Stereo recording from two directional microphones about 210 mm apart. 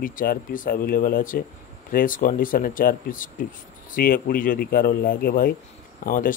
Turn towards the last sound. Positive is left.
turn(degrees=40)  # may be behind; listen again after turning